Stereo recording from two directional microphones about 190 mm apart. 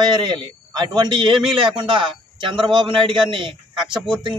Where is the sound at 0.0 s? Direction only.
25° right (ahead or behind).